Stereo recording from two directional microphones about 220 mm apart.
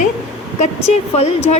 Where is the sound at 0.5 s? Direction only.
30° left (ahead or behind).